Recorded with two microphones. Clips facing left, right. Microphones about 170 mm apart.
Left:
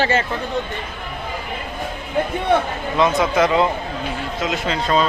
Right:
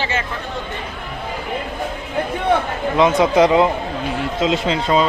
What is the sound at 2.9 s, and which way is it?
A man's voice, 20° right (ahead or behind).